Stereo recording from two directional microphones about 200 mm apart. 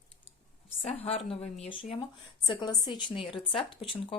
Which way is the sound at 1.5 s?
30° left (ahead or behind).